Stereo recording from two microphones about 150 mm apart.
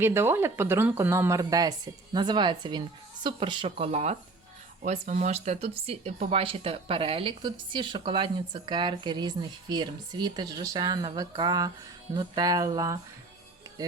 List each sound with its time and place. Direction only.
0.0 s speech: 15° right (ahead or behind)
12.1 s music: 30° right (ahead or behind)